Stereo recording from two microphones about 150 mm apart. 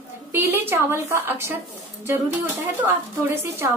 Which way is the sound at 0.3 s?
15° right (ahead or behind).